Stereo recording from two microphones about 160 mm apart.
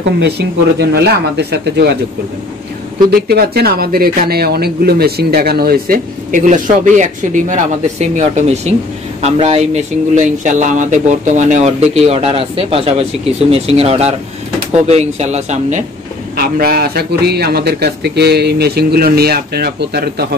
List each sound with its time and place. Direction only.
0.7 s speech: 85° right
3.1 s a man's voice: 70° right (ahead or behind); by 15.8 s 45° right (ahead or behind)
16.3 s a man's voice: 70° right (ahead or behind)